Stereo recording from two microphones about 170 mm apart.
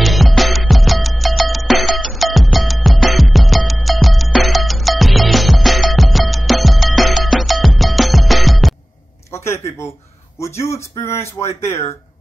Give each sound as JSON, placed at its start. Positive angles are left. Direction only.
{"t": 0.0, "sound": "music", "side_deg": 0}
{"t": 9.3, "sound": "a sound", "side_deg": 15}
{"t": 10.6, "sound": "speech", "side_deg": 15}